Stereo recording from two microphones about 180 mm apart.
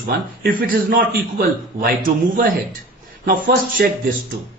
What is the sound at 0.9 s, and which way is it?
A man's voice, 55° right (ahead or behind).